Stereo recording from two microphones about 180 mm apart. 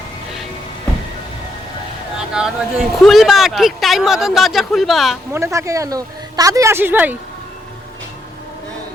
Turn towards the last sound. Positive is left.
turn(degrees=-10)  # may be behind; listen again after turning